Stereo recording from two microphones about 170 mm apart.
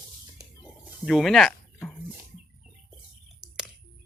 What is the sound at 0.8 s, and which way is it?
Speech, centre (ahead or behind).